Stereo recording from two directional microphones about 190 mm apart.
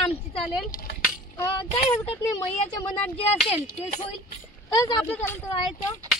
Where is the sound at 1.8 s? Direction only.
30° left (ahead or behind).